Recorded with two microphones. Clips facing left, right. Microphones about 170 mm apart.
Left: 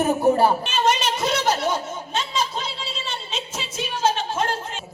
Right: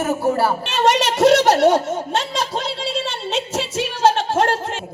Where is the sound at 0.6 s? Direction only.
75° right (ahead or behind).